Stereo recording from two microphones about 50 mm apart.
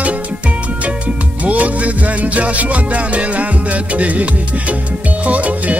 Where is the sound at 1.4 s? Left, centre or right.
Right.